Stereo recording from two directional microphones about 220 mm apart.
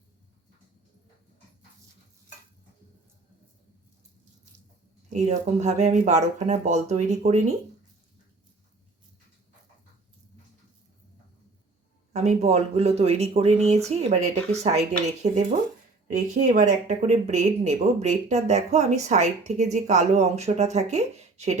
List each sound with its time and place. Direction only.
5.0 s speech: 30° right (ahead or behind)
12.1 s speech: 30° right (ahead or behind)